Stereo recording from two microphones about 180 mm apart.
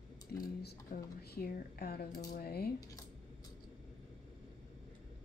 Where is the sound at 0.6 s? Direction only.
60° left (ahead or behind).